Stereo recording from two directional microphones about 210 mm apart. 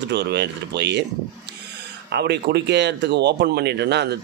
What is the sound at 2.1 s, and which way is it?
Speech, 50° right (ahead or behind).